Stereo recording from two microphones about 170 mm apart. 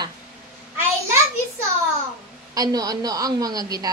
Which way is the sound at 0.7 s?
15° right (ahead or behind).